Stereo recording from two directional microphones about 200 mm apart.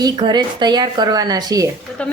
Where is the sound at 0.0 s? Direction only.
20° right (ahead or behind).